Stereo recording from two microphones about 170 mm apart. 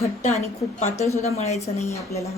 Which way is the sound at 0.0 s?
40° left (ahead or behind).